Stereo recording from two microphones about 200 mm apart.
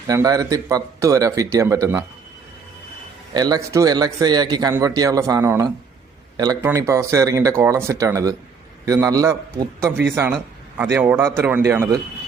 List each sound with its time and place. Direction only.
0.1 s speech: 15° right (ahead or behind)
3.3 s a man's voice: 20° right (ahead or behind)